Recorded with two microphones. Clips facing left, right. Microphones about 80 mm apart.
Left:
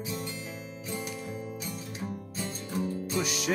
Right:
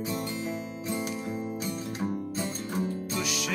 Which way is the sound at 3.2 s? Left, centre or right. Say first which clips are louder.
Left 4 dB; left.